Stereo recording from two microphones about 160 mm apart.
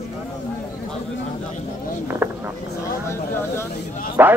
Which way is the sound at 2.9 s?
15° left (ahead or behind).